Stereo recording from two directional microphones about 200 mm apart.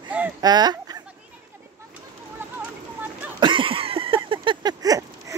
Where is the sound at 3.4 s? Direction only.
25° right (ahead or behind).